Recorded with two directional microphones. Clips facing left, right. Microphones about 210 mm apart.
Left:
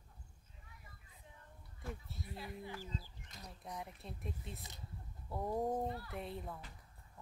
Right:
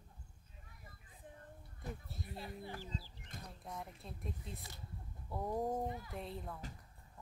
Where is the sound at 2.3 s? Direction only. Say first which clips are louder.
Even; 30° right (ahead or behind).